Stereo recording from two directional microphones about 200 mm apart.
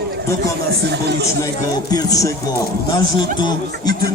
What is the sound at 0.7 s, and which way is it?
Speech, 55° right (ahead or behind).